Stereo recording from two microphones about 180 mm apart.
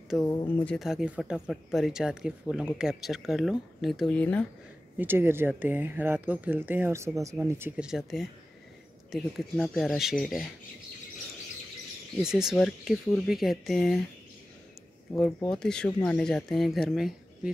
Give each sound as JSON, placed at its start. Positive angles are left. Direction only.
{"t": 0.2, "sound": "speech", "side_deg": 20}
{"t": 0.7, "sound": "speech", "side_deg": 0}
{"t": 4.9, "sound": "speech", "side_deg": -10}
{"t": 12.2, "sound": "speech", "side_deg": -5}
{"t": 15.1, "sound": "speech", "side_deg": 5}